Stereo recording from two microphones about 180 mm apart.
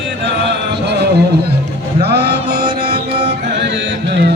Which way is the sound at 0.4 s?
65° right (ahead or behind).